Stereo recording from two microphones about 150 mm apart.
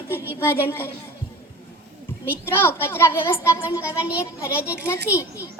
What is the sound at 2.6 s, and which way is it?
Speech, 15° left (ahead or behind).